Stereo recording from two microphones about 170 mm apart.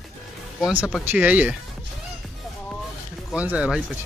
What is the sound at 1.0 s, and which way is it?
Speech, 10° right (ahead or behind).